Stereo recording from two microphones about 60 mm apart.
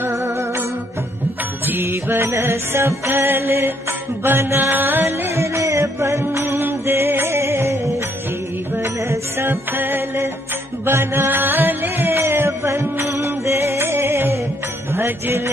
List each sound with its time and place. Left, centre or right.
0.1 s music: right
1.7 s music: right
3.1 s music: right
6.3 s music: right